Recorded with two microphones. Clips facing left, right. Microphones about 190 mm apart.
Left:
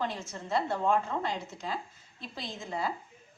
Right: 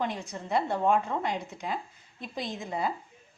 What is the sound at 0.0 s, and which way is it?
A woman's voice, 15° right (ahead or behind).